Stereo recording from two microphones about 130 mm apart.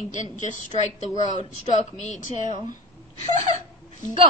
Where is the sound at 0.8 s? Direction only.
60° left (ahead or behind).